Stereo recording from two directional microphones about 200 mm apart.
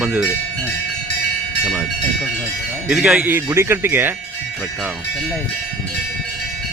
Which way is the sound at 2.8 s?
5° right (ahead or behind).